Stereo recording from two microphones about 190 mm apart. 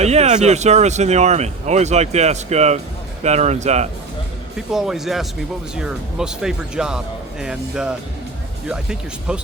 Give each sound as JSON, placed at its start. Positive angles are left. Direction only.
{"t": 0.0, "sound": "speech", "side_deg": -35}
{"t": 4.5, "sound": "speech", "side_deg": 0}